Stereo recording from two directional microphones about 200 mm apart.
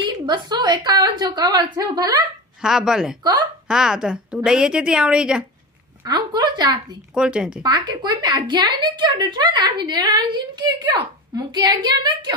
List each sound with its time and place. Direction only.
0.0 s a woman's voice: 20° right (ahead or behind)
2.6 s a woman's voice: 5° right (ahead or behind)
6.0 s a woman's voice: 20° right (ahead or behind)
7.2 s a woman's voice: 5° right (ahead or behind)
7.6 s a woman's voice: 20° right (ahead or behind)